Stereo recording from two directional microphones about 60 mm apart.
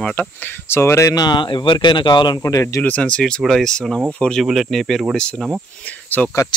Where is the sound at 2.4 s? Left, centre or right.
Left.